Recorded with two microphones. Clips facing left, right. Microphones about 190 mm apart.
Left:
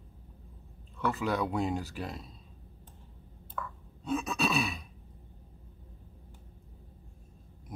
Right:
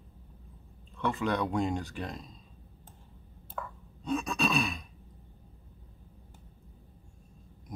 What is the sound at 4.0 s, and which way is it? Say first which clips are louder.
Speech: right 1 dB; 5° left (ahead or behind).